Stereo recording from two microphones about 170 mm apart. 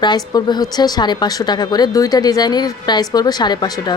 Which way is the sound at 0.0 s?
25° left (ahead or behind).